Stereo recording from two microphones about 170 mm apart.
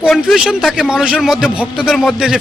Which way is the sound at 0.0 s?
Centre (ahead or behind).